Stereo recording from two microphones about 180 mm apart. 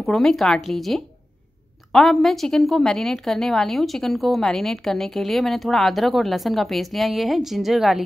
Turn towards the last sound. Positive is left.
turn(degrees=0)  # may be behind; listen again after turning